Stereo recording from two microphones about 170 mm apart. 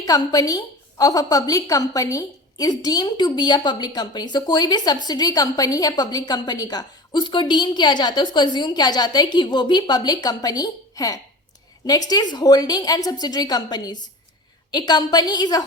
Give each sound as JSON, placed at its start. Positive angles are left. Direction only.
{"t": 0.0, "sound": "a woman's voice", "side_deg": 20}